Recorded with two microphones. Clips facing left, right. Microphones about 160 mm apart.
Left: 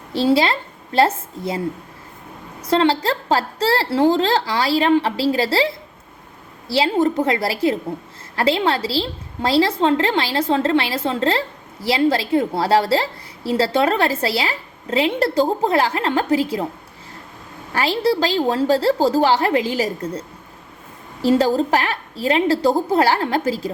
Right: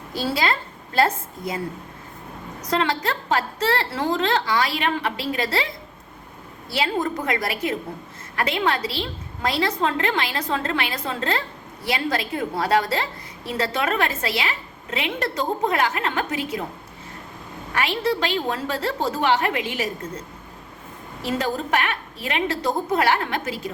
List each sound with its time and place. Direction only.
0.1 s a woman's voice: 25° left (ahead or behind)
2.6 s a woman's voice: 30° left (ahead or behind)
17.7 s a woman's voice: 35° left (ahead or behind)